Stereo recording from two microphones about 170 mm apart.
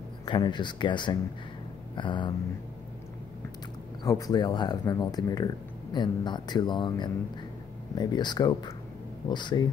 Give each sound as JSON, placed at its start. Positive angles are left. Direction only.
{"t": 0.2, "sound": "speech", "side_deg": 25}
{"t": 4.0, "sound": "speech", "side_deg": 20}